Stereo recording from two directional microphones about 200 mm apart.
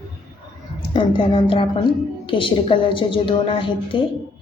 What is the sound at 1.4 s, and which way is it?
A woman's voice, 25° left (ahead or behind).